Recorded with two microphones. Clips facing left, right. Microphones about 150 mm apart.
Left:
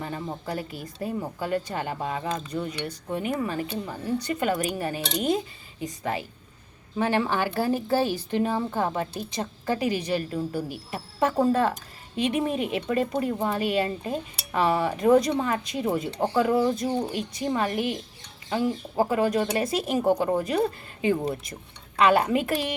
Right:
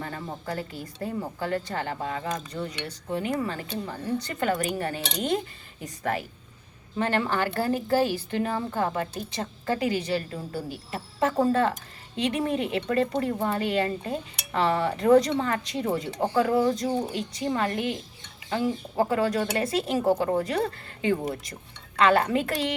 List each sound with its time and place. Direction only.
0.0 s a woman's voice: 15° left (ahead or behind)
7.0 s speech: 10° left (ahead or behind)